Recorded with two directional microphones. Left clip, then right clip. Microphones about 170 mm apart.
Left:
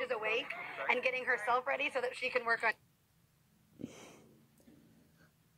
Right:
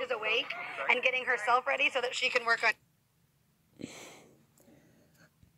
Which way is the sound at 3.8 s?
20° right (ahead or behind).